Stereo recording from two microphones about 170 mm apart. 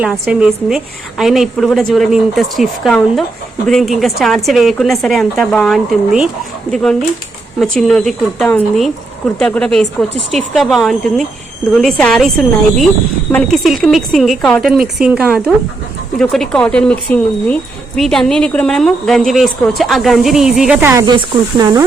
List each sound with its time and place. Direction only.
0.1 s speech: 5° right (ahead or behind)
21.6 s speech: 20° right (ahead or behind)